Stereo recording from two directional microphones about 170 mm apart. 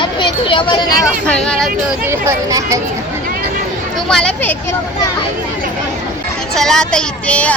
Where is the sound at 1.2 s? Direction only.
5° left (ahead or behind).